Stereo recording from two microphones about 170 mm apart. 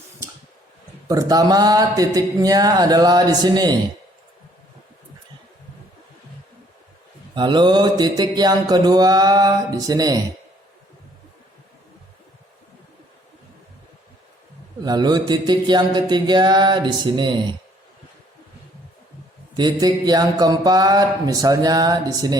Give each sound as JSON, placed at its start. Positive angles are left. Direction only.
{"t": 1.0, "sound": "mantra", "side_deg": -20}
{"t": 7.3, "sound": "mantra", "side_deg": -25}
{"t": 14.8, "sound": "mantra", "side_deg": -25}
{"t": 19.5, "sound": "mantra", "side_deg": -25}